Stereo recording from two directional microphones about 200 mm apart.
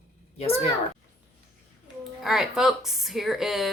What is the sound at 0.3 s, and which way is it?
Speech, 30° left (ahead or behind).